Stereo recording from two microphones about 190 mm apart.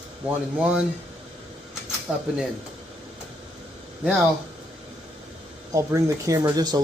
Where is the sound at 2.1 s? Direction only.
5° right (ahead or behind).